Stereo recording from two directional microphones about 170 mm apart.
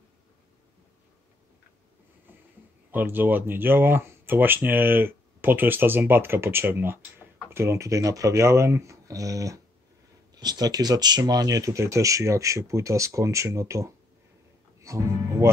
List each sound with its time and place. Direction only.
2.9 s speech: 10° right (ahead or behind)